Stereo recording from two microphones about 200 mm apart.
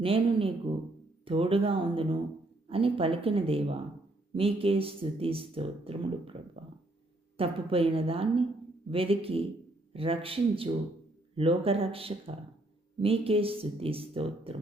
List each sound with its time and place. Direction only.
0.0 s speech: 25° right (ahead or behind)
7.3 s speech: 30° right (ahead or behind)